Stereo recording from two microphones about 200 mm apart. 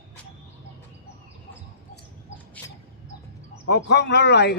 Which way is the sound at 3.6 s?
55° left (ahead or behind).